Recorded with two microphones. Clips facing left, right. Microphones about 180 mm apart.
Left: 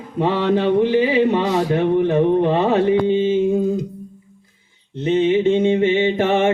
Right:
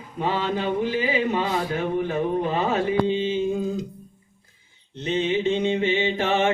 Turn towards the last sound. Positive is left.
turn(degrees=55)  # may be behind; listen again after turning